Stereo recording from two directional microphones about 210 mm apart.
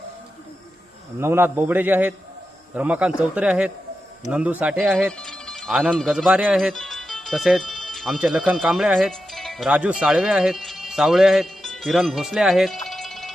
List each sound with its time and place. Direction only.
1.2 s a man's voice: 10° right (ahead or behind)
5.1 s speech: 5° left (ahead or behind)